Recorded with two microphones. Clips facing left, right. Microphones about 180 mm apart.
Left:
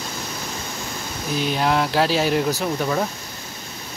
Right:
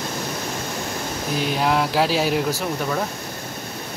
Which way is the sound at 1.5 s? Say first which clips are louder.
Even; 5° right (ahead or behind).